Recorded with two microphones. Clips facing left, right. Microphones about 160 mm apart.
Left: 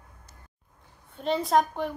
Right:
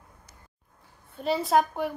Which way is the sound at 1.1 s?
5° right (ahead or behind).